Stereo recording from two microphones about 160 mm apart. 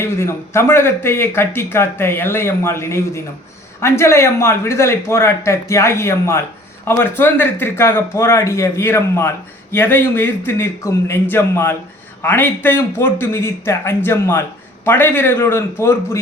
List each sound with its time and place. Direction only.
0.0 s a man's voice: 15° left (ahead or behind)